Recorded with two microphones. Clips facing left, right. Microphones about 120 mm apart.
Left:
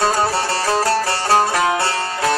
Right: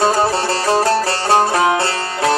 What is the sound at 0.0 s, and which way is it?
Music, 25° right (ahead or behind).